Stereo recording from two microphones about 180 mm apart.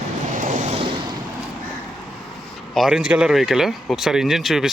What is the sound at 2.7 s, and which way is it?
Speech, 5° right (ahead or behind).